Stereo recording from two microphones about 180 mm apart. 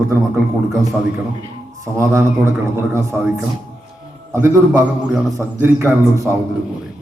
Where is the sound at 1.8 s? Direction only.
15° right (ahead or behind).